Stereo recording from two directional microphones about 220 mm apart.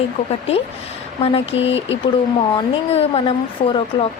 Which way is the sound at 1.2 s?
25° left (ahead or behind).